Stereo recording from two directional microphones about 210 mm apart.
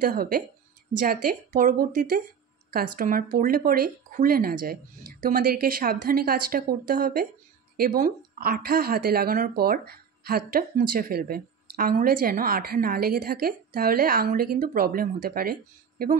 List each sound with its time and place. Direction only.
0.0 s speech: 45° right (ahead or behind)